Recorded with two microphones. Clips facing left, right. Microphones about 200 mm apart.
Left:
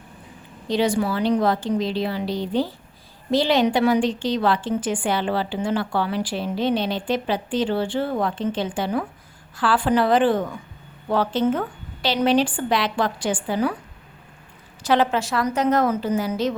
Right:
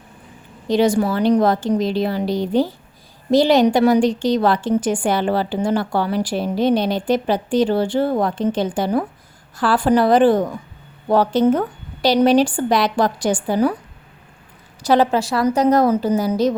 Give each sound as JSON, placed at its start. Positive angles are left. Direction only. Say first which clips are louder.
{"t": 0.7, "sound": "a woman's voice", "louder": "right 5 dB", "side_deg": -45}
{"t": 14.8, "sound": "a woman's voice", "louder": "right 4 dB", "side_deg": -35}